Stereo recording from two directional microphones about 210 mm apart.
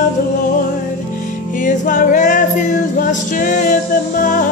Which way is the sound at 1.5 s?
40° left (ahead or behind).